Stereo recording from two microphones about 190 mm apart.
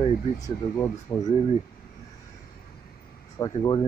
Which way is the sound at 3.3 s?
25° left (ahead or behind).